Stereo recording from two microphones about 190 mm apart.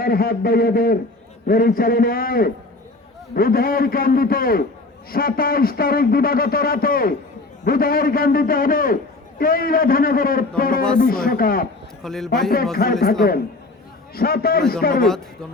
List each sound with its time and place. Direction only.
0.0 s speech: 50° left (ahead or behind)
12.0 s a man's voice: centre (ahead or behind)
12.7 s speech: 55° left (ahead or behind)
14.2 s speech: 55° left (ahead or behind)